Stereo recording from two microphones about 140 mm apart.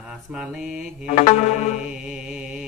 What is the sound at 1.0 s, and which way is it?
Music, 55° left (ahead or behind).